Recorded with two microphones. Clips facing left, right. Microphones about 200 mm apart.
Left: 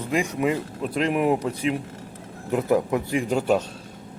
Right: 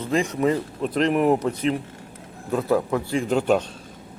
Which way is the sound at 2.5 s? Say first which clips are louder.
Even; 20° left (ahead or behind).